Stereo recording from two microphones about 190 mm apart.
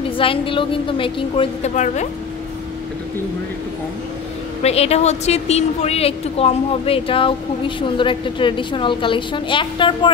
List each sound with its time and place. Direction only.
0.2 s a woman's voice: 30° left (ahead or behind)
4.6 s a woman's voice: 35° left (ahead or behind)